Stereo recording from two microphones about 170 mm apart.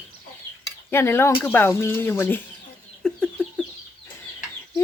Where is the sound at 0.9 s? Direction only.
15° left (ahead or behind).